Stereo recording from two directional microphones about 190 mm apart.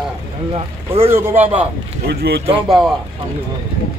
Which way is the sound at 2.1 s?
60° right (ahead or behind).